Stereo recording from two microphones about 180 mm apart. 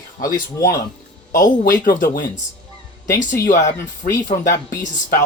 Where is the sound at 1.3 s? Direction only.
55° left (ahead or behind).